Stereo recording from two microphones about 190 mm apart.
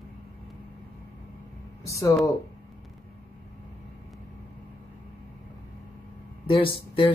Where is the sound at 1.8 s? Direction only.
15° left (ahead or behind).